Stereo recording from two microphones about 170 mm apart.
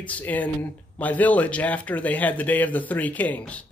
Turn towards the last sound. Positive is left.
turn(degrees=10)  # may be behind; listen again after turning